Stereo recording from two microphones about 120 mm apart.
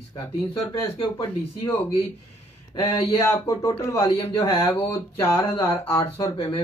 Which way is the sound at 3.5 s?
25° left (ahead or behind).